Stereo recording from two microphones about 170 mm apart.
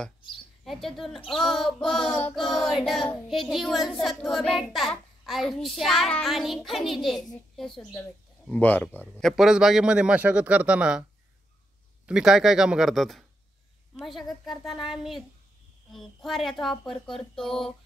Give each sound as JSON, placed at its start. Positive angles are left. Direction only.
{"t": 0.7, "sound": "child singing", "side_deg": 0}
{"t": 7.5, "sound": "a woman's voice", "side_deg": 0}
{"t": 8.5, "sound": "child singing", "side_deg": 10}
{"t": 12.1, "sound": "child singing", "side_deg": -5}